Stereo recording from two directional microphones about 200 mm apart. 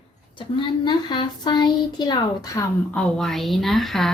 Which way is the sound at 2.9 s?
Centre (ahead or behind).